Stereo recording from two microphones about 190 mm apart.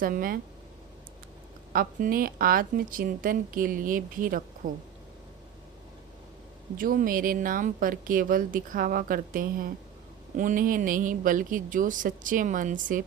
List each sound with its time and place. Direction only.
0.0 s speech: 50° right (ahead or behind)
1.7 s speech: 50° right (ahead or behind)
6.7 s speech: 45° right (ahead or behind)